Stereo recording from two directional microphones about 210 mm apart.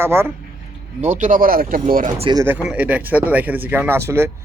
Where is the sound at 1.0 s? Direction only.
35° right (ahead or behind).